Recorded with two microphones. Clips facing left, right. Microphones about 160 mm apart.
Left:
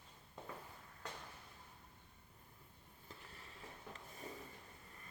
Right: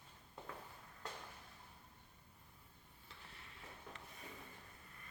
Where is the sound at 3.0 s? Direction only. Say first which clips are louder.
Left 3 dB; 40° left (ahead or behind).